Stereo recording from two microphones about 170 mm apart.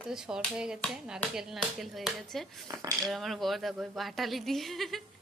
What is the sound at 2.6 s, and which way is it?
Speech, 20° right (ahead or behind).